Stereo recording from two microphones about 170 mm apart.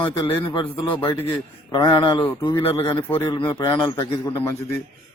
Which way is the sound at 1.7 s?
30° left (ahead or behind).